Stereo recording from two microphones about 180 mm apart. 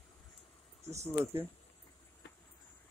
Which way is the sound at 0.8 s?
15° right (ahead or behind).